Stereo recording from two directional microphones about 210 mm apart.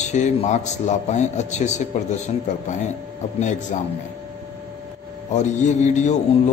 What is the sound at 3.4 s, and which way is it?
Speech, 35° left (ahead or behind).